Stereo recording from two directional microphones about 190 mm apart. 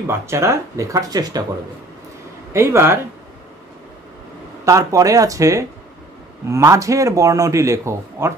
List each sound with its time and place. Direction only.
0.0 s speech: 15° right (ahead or behind)
2.5 s speech: 15° right (ahead or behind)
4.6 s speech: 15° right (ahead or behind)